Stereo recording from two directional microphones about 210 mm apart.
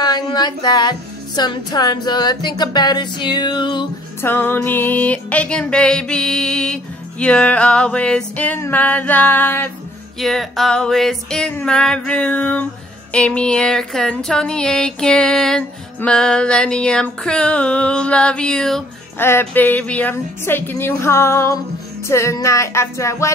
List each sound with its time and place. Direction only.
0.0 s music: 20° left (ahead or behind)
4.2 s music: 10° left (ahead or behind)
10.1 s a sound: centre (ahead or behind)
22.0 s music: 15° left (ahead or behind)